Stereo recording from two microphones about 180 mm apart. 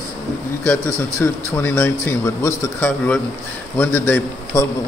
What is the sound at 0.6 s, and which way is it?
A man's voice, 15° left (ahead or behind).